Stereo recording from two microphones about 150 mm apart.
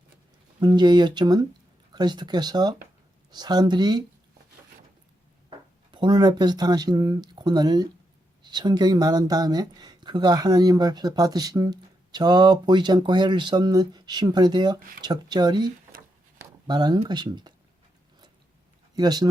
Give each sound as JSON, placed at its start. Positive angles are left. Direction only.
{"t": 0.6, "sound": "speech", "side_deg": -30}
{"t": 5.9, "sound": "speech", "side_deg": -30}
{"t": 18.9, "sound": "speech", "side_deg": -25}